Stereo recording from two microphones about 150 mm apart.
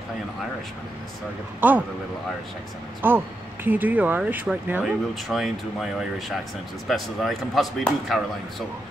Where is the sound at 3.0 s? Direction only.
15° right (ahead or behind).